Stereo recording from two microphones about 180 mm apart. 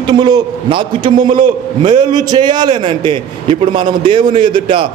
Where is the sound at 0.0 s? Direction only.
25° right (ahead or behind).